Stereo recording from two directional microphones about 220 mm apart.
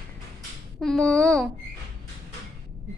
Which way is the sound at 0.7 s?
Centre (ahead or behind).